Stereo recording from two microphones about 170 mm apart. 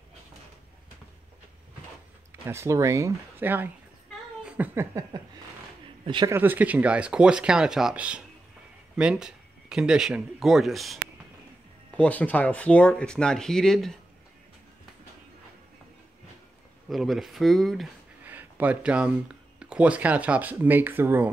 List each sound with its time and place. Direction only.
2.4 s speech: 15° right (ahead or behind)
4.5 s a sound: 10° right (ahead or behind)
6.0 s a man's voice: 25° right (ahead or behind)
6.3 s speech: 10° right (ahead or behind)
12.0 s speech: 10° left (ahead or behind)
16.9 s speech: centre (ahead or behind)
18.2 s speech: 10° right (ahead or behind)